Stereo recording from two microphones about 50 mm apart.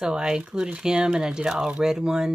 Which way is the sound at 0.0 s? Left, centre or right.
Centre.